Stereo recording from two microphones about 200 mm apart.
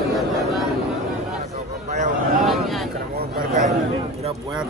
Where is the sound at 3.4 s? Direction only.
45° right (ahead or behind).